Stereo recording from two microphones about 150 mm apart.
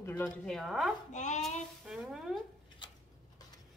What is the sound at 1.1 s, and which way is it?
Speech, 55° left (ahead or behind).